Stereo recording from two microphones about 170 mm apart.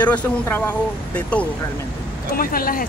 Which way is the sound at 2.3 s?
60° left (ahead or behind).